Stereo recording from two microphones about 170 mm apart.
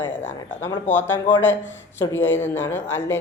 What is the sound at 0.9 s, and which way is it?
Speech, 10° left (ahead or behind).